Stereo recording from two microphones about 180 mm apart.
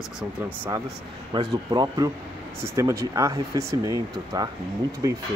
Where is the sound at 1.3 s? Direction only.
25° right (ahead or behind).